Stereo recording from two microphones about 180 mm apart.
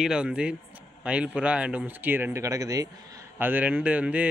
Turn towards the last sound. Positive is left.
turn(degrees=-10)  # may be behind; listen again after turning